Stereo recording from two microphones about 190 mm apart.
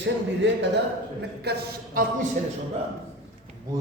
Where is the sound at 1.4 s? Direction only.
60° right (ahead or behind).